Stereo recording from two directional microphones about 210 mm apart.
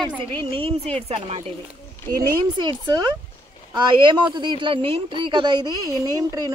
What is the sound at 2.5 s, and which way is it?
A woman's voice, 20° right (ahead or behind).